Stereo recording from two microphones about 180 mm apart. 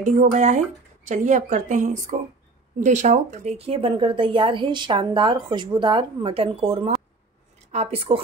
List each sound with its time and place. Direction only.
0.0 s a woman's voice: 45° right (ahead or behind)